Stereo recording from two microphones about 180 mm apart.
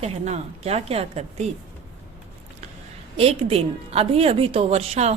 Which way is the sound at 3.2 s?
35° right (ahead or behind).